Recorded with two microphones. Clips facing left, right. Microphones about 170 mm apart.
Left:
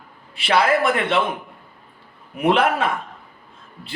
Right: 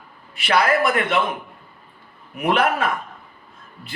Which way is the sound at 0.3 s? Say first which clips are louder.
Left 1 dB; 25° left (ahead or behind).